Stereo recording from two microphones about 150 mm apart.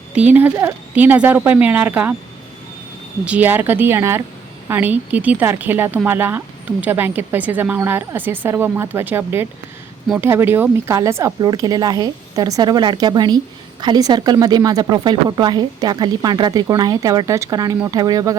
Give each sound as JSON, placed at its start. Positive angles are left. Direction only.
{"t": 0.1, "sound": "speech", "side_deg": -10}
{"t": 3.2, "sound": "a woman's voice", "side_deg": -10}